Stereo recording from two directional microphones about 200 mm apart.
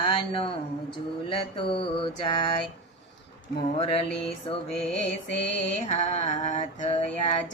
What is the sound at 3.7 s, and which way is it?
Mantra, 30° left (ahead or behind).